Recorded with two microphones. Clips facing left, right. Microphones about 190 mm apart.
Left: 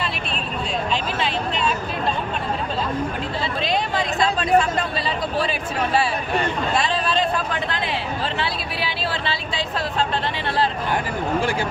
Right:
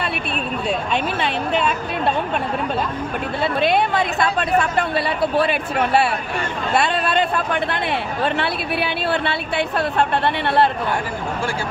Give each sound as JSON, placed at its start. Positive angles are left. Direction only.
{"t": 0.9, "sound": "a man's voice", "side_deg": -60}
{"t": 3.6, "sound": "a man's voice", "side_deg": -60}